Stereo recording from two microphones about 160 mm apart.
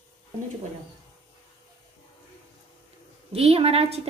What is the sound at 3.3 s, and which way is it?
Dishes, 40° right (ahead or behind).